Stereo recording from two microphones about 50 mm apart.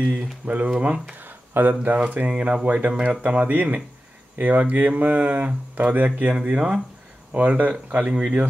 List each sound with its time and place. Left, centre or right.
0.0 s speech: right
1.2 s a sound: right
2.2 s speech: right
2.9 s speech: centre
3.2 s speech: right
6.3 s speech: centre
7.3 s speech: right